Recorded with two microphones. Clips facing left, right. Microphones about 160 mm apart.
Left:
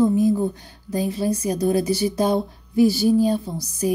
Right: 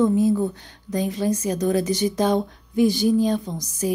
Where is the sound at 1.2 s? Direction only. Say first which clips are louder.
Left 1 dB; 10° left (ahead or behind).